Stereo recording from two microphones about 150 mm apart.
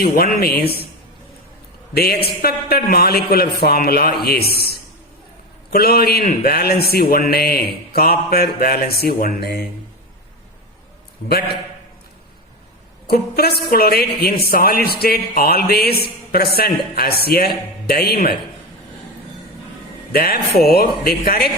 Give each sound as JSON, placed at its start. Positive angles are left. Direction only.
{"t": 0.0, "sound": "speech", "side_deg": 80}
{"t": 1.9, "sound": "a man's voice", "side_deg": 90}
{"t": 5.7, "sound": "speech", "side_deg": 90}
{"t": 6.9, "sound": "speech", "side_deg": 75}
{"t": 13.1, "sound": "a woman's voice", "side_deg": 90}
{"t": 20.1, "sound": "speech", "side_deg": 85}